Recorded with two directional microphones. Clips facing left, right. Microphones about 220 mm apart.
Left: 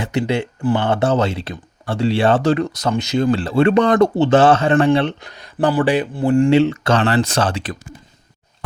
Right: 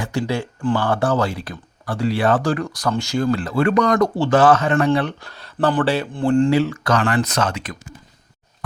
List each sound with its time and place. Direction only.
0.0 s speech: 20° left (ahead or behind)
6.5 s speech: 25° left (ahead or behind)